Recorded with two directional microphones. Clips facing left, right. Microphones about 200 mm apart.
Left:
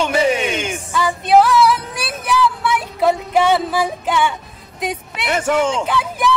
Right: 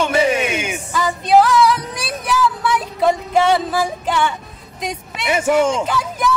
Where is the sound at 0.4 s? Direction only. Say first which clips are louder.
Even; 5° right (ahead or behind).